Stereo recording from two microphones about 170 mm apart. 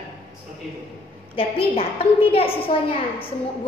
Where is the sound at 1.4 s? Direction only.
35° left (ahead or behind).